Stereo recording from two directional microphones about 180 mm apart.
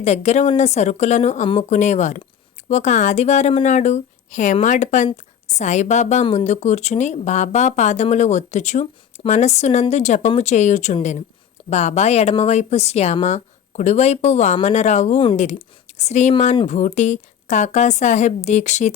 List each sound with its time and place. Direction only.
0.0 s speech: 40° left (ahead or behind)